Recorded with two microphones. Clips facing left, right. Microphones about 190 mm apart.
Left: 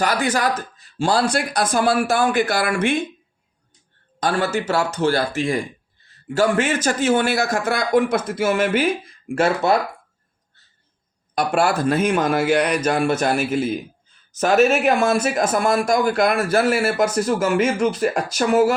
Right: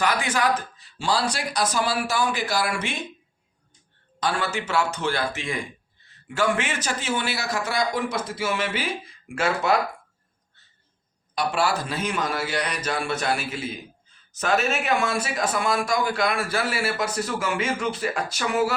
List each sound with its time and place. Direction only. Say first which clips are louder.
0.0 s speech: left 3 dB; 40° left (ahead or behind)
4.2 s speech: left 6 dB; 45° left (ahead or behind)
11.3 s speech: left 5 dB; 50° left (ahead or behind)